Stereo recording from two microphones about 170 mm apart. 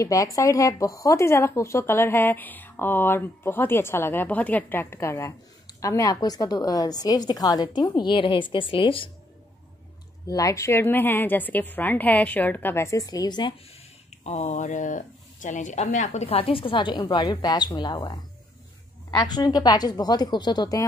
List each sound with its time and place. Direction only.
0.0 s a woman's voice: 20° left (ahead or behind)
10.2 s speech: 20° left (ahead or behind)
14.1 s a woman's voice: 40° left (ahead or behind); by 20.8 s 25° left (ahead or behind)